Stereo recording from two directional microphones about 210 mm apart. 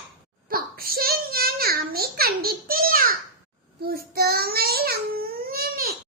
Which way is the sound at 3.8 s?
45° right (ahead or behind).